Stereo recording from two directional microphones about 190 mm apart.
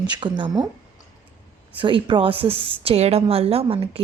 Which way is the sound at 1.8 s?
25° right (ahead or behind).